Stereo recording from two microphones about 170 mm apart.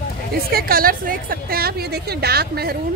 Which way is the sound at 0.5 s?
60° right (ahead or behind).